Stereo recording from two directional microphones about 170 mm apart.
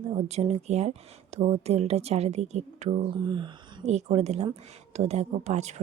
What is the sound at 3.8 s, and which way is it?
A woman's voice, 40° right (ahead or behind).